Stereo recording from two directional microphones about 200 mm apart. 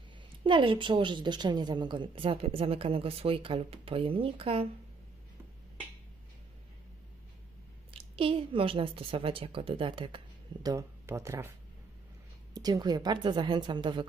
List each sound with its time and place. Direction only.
0.4 s a woman's voice: 25° right (ahead or behind)
7.9 s a woman's voice: 30° right (ahead or behind)
12.5 s a woman's voice: 20° right (ahead or behind)